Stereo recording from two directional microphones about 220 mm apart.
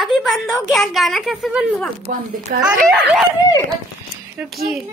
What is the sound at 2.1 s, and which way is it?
Speech, 40° right (ahead or behind).